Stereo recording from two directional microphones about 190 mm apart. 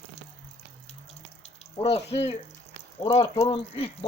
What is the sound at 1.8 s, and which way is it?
Speech, 35° left (ahead or behind).